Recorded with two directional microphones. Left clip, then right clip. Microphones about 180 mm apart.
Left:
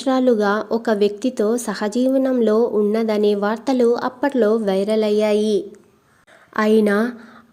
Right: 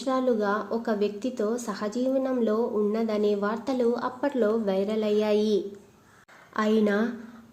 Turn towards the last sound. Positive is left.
turn(degrees=35)  # may be behind; listen again after turning